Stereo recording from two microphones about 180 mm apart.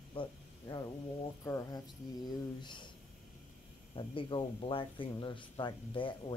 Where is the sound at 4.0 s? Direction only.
25° left (ahead or behind).